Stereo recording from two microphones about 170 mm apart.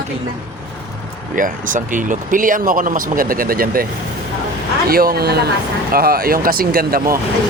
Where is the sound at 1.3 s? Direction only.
50° right (ahead or behind).